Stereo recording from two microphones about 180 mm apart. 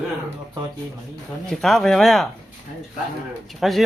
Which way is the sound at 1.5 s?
Centre (ahead or behind).